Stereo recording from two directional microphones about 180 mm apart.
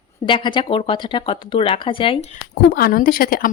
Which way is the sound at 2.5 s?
60° left (ahead or behind).